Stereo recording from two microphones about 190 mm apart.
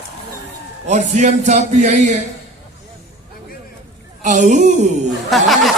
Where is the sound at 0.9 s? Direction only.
35° right (ahead or behind).